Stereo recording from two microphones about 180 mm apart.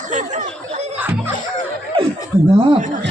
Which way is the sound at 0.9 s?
10° right (ahead or behind).